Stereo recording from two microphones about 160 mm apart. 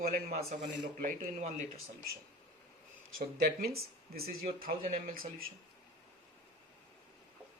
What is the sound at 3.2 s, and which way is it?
Speech, 70° right (ahead or behind).